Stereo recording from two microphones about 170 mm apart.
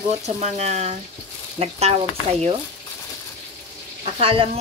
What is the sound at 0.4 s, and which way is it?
Speech, 40° right (ahead or behind).